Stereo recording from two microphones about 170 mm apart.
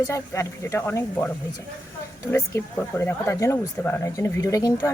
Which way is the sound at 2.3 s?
15° left (ahead or behind).